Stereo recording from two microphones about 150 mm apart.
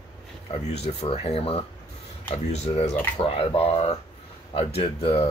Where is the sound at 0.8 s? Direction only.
40° left (ahead or behind).